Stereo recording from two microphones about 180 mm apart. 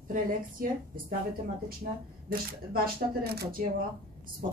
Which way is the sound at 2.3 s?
55° right (ahead or behind).